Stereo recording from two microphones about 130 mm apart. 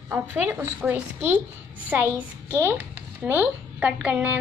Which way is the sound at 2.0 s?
15° left (ahead or behind).